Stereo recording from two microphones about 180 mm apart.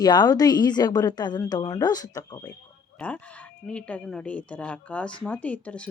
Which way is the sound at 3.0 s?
5° left (ahead or behind).